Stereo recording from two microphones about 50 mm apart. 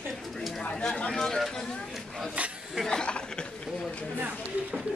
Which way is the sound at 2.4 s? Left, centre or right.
Right.